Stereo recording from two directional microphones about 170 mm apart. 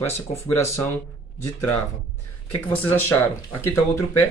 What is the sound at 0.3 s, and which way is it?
Speech, 15° left (ahead or behind).